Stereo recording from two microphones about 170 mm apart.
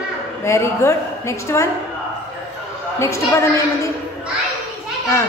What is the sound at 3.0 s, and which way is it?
Speech, 15° left (ahead or behind).